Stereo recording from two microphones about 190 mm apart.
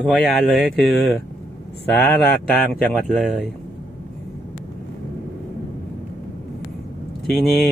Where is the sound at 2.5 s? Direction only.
5° left (ahead or behind).